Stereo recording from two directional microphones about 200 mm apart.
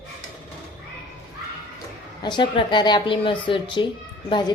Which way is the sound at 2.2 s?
25° left (ahead or behind).